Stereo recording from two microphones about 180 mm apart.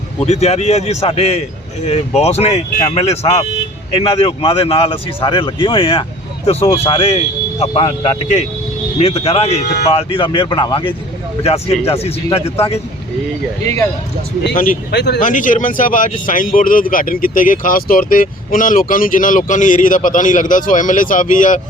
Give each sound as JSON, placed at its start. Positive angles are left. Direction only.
{"t": 0.2, "sound": "speech", "side_deg": 35}
{"t": 14.4, "sound": "speech", "side_deg": 50}
{"t": 14.9, "sound": "speech", "side_deg": 70}
{"t": 15.2, "sound": "speech", "side_deg": 45}